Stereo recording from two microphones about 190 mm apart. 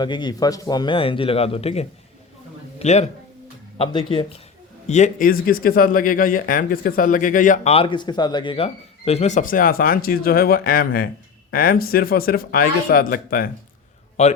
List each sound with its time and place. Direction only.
0.0 s speech: 25° left (ahead or behind)
4.9 s speech: 40° left (ahead or behind)
14.2 s a man's voice: 35° left (ahead or behind)